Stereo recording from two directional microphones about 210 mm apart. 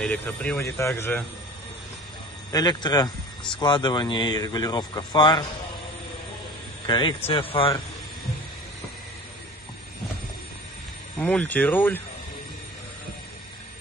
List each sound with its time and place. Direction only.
0.0 s speech: 5° left (ahead or behind)
2.5 s speech: 20° left (ahead or behind)
6.9 s speech: 20° left (ahead or behind)
11.1 s speech: 5° left (ahead or behind)